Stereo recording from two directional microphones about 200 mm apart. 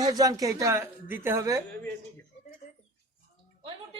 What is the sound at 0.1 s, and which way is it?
Speech, 20° right (ahead or behind).